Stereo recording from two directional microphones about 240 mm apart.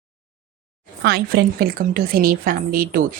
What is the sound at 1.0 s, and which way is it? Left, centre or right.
A woman's voice, right.